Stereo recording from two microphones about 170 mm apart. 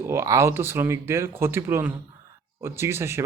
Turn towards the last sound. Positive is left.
turn(degrees=-15)  # may be behind; listen again after turning